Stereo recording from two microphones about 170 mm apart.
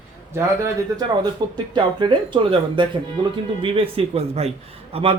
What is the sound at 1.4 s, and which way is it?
Speech, 25° right (ahead or behind).